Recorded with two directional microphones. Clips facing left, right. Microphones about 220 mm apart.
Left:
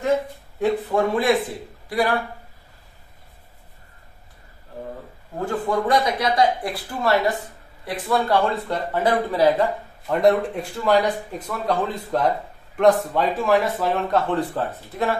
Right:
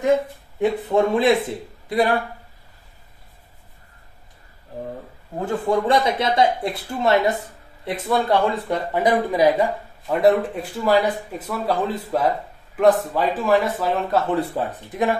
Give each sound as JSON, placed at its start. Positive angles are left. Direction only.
{"t": 0.6, "sound": "speech", "side_deg": -20}
{"t": 5.7, "sound": "speech", "side_deg": -25}
{"t": 10.0, "sound": "speech", "side_deg": -5}